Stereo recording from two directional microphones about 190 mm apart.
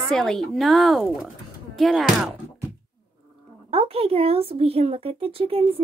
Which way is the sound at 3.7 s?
30° right (ahead or behind).